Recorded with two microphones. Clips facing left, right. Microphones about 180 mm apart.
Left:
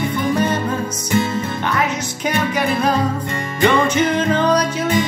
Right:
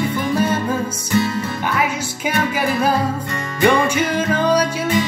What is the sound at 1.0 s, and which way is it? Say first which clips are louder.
Music: left 1 dB; 20° left (ahead or behind).